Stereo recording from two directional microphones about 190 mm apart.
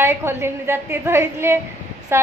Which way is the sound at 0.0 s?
15° right (ahead or behind).